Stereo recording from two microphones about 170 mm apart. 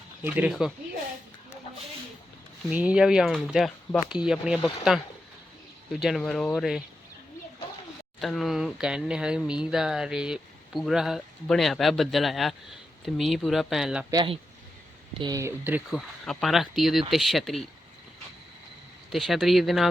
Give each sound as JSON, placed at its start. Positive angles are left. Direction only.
{"t": 0.2, "sound": "speech", "side_deg": -10}
{"t": 2.6, "sound": "speech", "side_deg": -5}
{"t": 8.2, "sound": "speech", "side_deg": 0}
{"t": 14.1, "sound": "speech", "side_deg": -25}
{"t": 15.9, "sound": "speech", "side_deg": 0}
{"t": 19.1, "sound": "speech", "side_deg": 0}